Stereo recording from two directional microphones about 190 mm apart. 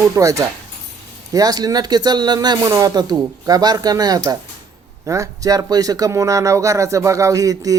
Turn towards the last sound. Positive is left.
turn(degrees=-20)  # may be behind; listen again after turning